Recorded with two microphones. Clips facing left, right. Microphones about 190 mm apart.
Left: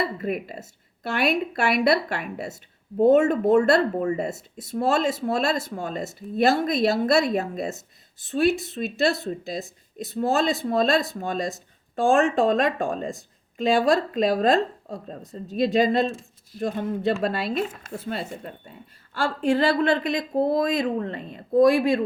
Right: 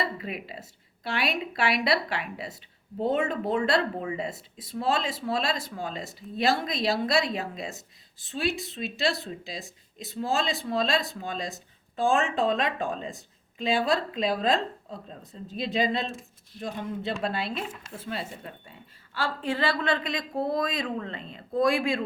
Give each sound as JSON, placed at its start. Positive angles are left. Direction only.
{"t": 0.0, "sound": "speech", "side_deg": 50}